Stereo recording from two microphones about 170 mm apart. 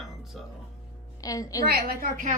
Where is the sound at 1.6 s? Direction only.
65° right (ahead or behind).